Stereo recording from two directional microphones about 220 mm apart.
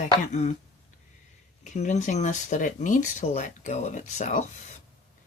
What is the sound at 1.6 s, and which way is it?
Speech, 35° left (ahead or behind).